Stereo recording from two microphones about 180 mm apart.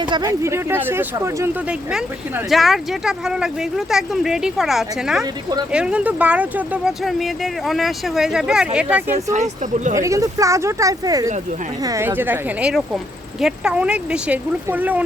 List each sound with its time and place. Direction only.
0.0 s speech: 25° right (ahead or behind)
1.9 s speech: 5° right (ahead or behind)
5.2 s speech: 20° right (ahead or behind)
5.7 s speech: 5° right (ahead or behind)
9.3 s speech: 40° right (ahead or behind)
9.9 s speech: 15° right (ahead or behind)